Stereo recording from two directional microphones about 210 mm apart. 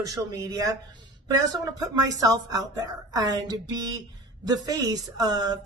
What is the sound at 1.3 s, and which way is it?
A woman's voice, 15° right (ahead or behind).